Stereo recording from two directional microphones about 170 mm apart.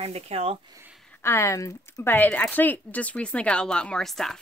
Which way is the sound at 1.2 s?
15° left (ahead or behind).